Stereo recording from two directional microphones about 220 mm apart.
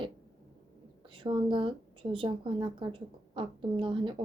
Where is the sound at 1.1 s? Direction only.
20° right (ahead or behind).